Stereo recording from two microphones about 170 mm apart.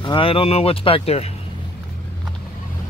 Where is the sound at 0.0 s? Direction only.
30° left (ahead or behind).